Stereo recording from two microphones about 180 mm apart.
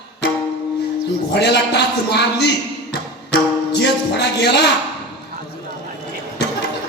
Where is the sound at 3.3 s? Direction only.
70° left (ahead or behind).